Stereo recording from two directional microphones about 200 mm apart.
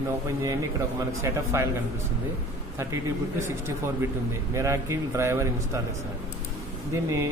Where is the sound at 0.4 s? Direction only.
15° right (ahead or behind).